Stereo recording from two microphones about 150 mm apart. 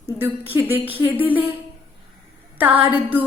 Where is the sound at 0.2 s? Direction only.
15° right (ahead or behind).